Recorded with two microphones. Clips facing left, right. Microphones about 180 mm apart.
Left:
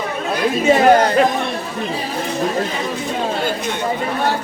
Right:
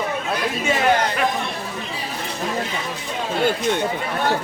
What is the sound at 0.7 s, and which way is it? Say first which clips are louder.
Speech: left 8 dB; 40° left (ahead or behind).